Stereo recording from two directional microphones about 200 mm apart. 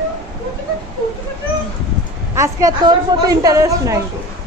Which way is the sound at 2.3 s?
15° right (ahead or behind).